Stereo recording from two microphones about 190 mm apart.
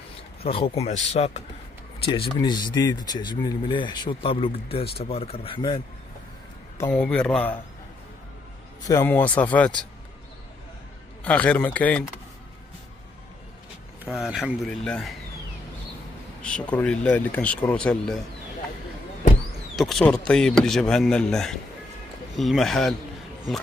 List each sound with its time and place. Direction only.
0.4 s speech: 30° left (ahead or behind)
2.4 s speech: 20° left (ahead or behind)
6.9 s speech: 5° left (ahead or behind)
8.8 s speech: 15° left (ahead or behind)
11.2 s speech: 5° left (ahead or behind)
14.0 s speech: 5° right (ahead or behind)
16.4 s speech: 5° left (ahead or behind)
19.7 s speech: centre (ahead or behind)